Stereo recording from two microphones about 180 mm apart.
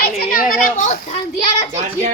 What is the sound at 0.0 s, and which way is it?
Children playing, 60° left (ahead or behind).